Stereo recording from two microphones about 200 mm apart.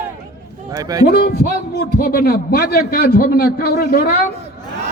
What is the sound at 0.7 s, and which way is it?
Speech, 20° right (ahead or behind).